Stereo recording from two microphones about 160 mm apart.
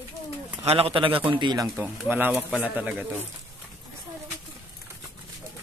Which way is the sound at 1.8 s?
10° right (ahead or behind).